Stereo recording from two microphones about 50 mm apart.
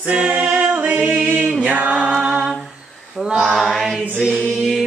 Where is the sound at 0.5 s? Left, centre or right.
Right.